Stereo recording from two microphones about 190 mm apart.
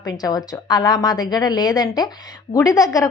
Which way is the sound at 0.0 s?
20° left (ahead or behind).